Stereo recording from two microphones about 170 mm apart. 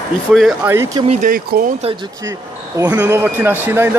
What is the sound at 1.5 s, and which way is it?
Speech, 65° right (ahead or behind).